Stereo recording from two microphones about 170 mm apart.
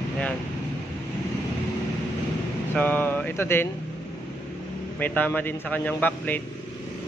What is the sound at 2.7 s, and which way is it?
Speech, 10° left (ahead or behind).